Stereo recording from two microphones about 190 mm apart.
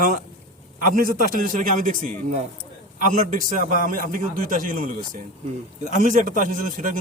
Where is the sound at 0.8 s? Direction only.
45° right (ahead or behind).